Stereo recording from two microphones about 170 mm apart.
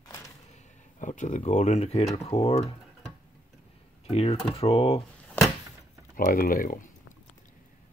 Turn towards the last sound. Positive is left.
turn(degrees=50)  # may be behind; listen again after turning